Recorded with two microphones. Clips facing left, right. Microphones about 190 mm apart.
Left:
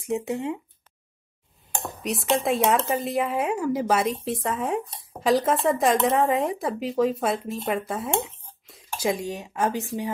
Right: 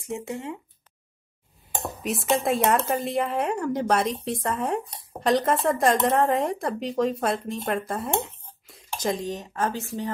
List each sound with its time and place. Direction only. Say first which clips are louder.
0.0 s speech: left 5 dB; 15° left (ahead or behind)
1.8 s speech: even; centre (ahead or behind)